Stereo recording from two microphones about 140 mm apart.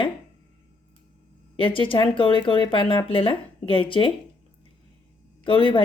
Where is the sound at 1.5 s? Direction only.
40° left (ahead or behind).